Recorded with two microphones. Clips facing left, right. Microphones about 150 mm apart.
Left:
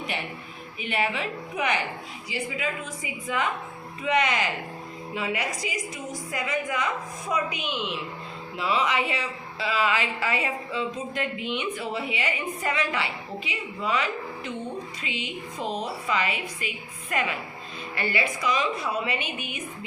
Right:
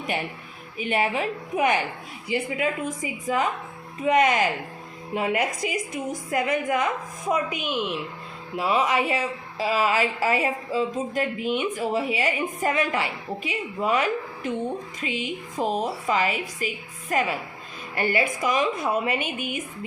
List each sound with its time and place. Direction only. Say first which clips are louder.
0.8 s speech: right 4 dB; 40° right (ahead or behind)